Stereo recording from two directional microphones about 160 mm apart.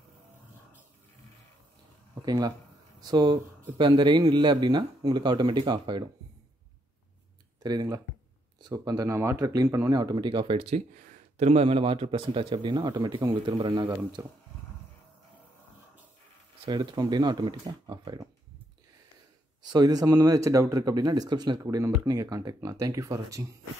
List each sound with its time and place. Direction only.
2.2 s speech: 25° right (ahead or behind)
7.6 s speech: 25° right (ahead or behind)
14.2 s speech: 15° right (ahead or behind)
16.6 s speech: 25° right (ahead or behind)
19.6 s speech: 25° right (ahead or behind)